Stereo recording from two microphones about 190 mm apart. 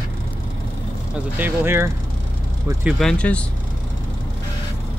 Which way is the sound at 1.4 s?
10° right (ahead or behind).